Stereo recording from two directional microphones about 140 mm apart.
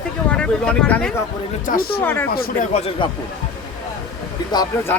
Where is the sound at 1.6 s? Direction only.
90° left.